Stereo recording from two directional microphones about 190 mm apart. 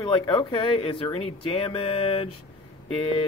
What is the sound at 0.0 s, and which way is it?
Speech, 25° left (ahead or behind).